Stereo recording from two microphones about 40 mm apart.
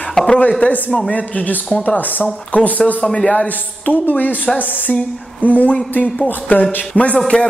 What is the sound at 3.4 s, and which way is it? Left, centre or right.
A woman's voice, left.